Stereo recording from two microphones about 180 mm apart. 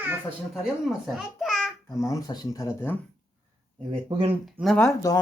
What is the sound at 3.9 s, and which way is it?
Speech, 30° right (ahead or behind).